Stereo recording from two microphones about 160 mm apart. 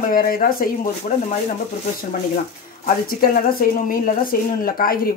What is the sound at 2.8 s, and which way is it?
Speech, 65° left (ahead or behind).